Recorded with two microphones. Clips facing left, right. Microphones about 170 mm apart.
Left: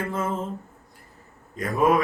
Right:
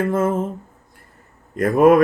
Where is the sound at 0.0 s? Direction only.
50° right (ahead or behind).